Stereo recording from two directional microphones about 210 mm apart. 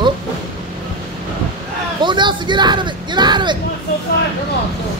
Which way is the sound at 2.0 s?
20° right (ahead or behind).